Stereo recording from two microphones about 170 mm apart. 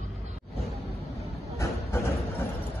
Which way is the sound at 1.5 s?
15° left (ahead or behind).